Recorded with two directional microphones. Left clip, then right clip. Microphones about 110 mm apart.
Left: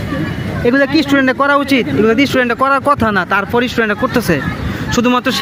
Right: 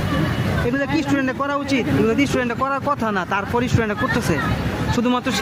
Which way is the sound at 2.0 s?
45° left (ahead or behind).